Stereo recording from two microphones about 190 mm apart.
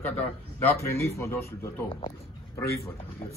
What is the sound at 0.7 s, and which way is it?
A man's voice, 15° left (ahead or behind).